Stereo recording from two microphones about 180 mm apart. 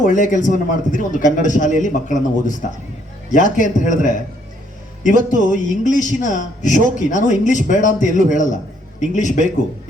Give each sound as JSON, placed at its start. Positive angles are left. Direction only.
{"t": 0.0, "sound": "a man's voice", "side_deg": 45}
{"t": 5.3, "sound": "a man's voice", "side_deg": 45}